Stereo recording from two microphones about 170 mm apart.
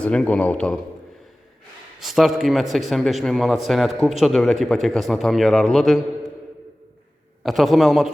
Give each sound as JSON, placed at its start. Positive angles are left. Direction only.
{"t": 0.0, "sound": "a man's voice", "side_deg": 5}
{"t": 2.0, "sound": "a man's voice", "side_deg": 0}
{"t": 7.4, "sound": "a man's voice", "side_deg": 0}